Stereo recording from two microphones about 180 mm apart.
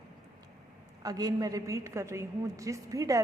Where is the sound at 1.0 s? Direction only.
20° right (ahead or behind).